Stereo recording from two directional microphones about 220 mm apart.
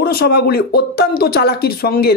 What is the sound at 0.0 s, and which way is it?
Speech, 45° left (ahead or behind).